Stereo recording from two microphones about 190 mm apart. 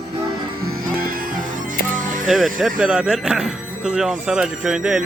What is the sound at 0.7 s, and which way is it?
Music, 50° right (ahead or behind).